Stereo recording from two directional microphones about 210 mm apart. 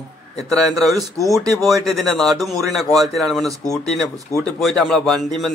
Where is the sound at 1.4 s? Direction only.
15° right (ahead or behind).